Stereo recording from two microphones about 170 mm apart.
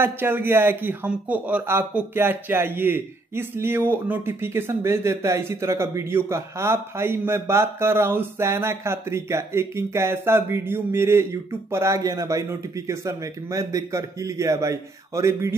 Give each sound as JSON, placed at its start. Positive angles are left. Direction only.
{"t": 0.0, "sound": "speech", "side_deg": -10}